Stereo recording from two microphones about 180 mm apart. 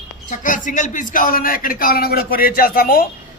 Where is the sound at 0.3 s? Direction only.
45° left (ahead or behind).